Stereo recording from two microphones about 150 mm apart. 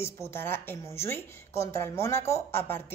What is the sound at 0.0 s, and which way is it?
A woman's voice, 15° left (ahead or behind).